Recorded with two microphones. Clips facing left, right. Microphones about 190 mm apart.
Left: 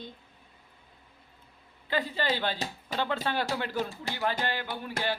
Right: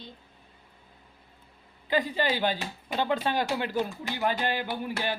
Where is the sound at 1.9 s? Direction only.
15° right (ahead or behind).